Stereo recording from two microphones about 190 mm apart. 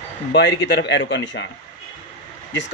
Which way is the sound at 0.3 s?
65° left (ahead or behind).